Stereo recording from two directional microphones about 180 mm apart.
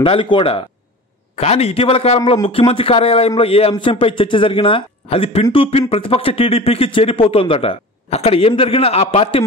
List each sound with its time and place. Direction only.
0.0 s a man's voice: 30° left (ahead or behind)